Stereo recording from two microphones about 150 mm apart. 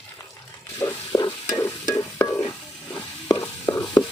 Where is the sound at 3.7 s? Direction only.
30° left (ahead or behind).